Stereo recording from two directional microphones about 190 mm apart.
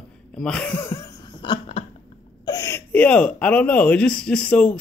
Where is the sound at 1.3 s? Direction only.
30° left (ahead or behind).